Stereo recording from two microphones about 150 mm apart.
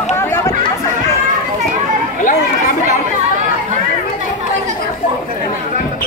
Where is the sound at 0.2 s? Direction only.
15° left (ahead or behind).